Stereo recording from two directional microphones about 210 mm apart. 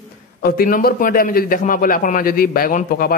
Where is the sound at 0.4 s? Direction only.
45° left (ahead or behind).